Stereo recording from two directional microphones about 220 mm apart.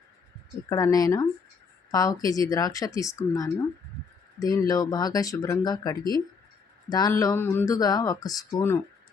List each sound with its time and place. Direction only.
0.7 s speech: 15° left (ahead or behind)